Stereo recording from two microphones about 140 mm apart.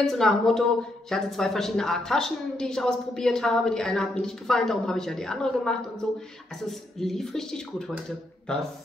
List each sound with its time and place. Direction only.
0.0 s a woman's voice: 5° left (ahead or behind)